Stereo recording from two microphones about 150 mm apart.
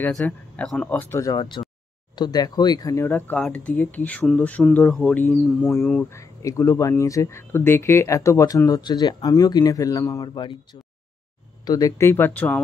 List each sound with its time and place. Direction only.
0.1 s speech: 5° left (ahead or behind)
1.2 s speech: 30° left (ahead or behind); by 6.1 s 10° left (ahead or behind)
6.1 s speech: 20° left (ahead or behind)